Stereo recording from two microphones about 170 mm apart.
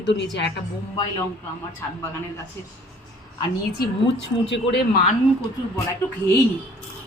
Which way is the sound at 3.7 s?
90° left.